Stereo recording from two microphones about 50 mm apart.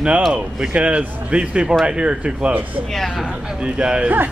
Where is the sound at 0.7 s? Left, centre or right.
Right.